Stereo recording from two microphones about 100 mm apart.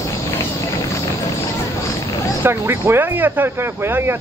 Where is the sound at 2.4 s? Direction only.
25° right (ahead or behind).